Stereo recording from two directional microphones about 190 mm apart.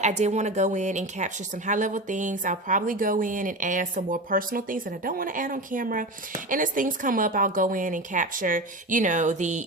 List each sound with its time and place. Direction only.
0.0 s a woman's voice: 35° right (ahead or behind)